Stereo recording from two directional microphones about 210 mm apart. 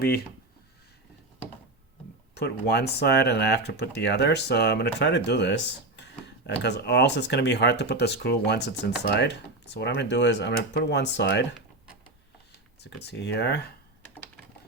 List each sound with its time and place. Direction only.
2.3 s speech: 50° left (ahead or behind)
12.8 s speech: 50° left (ahead or behind)